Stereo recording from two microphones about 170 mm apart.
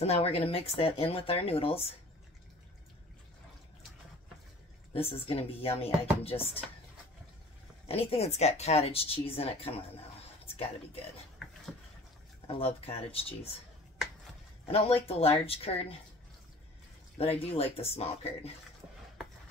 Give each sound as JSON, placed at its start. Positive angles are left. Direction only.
{"t": 0.0, "sound": "speech", "side_deg": 35}
{"t": 4.9, "sound": "speech", "side_deg": 35}
{"t": 7.9, "sound": "speech", "side_deg": 35}
{"t": 12.4, "sound": "speech", "side_deg": 35}
{"t": 14.7, "sound": "speech", "side_deg": 35}
{"t": 17.2, "sound": "speech", "side_deg": 35}